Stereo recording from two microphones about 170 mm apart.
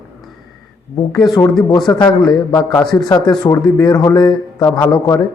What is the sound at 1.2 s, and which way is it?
A man's voice, 20° left (ahead or behind).